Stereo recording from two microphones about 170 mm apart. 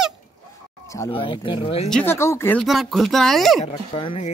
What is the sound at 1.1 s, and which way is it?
Speech, 30° left (ahead or behind).